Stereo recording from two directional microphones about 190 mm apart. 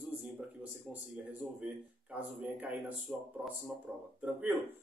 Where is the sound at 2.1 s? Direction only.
10° right (ahead or behind).